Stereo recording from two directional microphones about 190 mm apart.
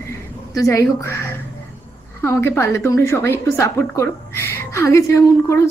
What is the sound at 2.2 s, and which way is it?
A woman's voice, 15° left (ahead or behind).